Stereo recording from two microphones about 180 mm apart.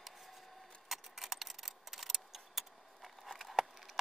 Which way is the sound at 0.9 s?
Centre (ahead or behind).